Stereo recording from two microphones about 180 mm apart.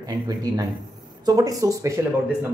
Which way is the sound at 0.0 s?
20° right (ahead or behind).